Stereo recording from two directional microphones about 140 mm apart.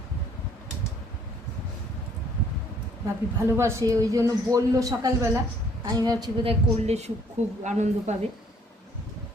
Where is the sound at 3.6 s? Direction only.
20° right (ahead or behind); by 8.1 s 55° right (ahead or behind).